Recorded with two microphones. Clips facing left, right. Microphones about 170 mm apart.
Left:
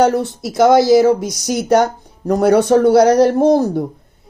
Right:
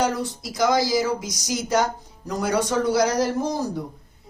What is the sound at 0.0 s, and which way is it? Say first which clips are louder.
Speech: left 10 dB; 60° left (ahead or behind).